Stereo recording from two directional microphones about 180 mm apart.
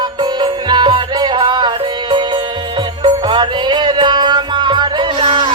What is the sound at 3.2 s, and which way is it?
Music, 25° right (ahead or behind).